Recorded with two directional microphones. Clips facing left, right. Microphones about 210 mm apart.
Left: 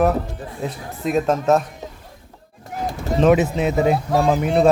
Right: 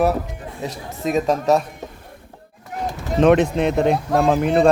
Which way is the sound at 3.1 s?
Centre (ahead or behind).